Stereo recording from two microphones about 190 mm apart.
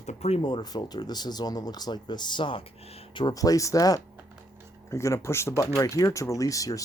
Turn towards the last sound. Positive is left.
turn(degrees=15)  # may be behind; listen again after turning